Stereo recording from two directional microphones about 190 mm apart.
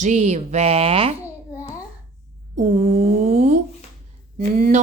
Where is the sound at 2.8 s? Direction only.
35° right (ahead or behind).